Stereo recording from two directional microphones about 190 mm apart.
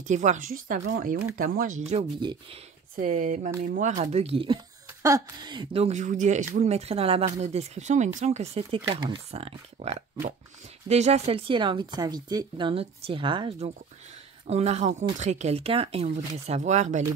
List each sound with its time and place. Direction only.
0.0 s a woman's voice: 40° right (ahead or behind)
1.9 s speech: 30° right (ahead or behind)
3.0 s a woman's voice: 40° right (ahead or behind)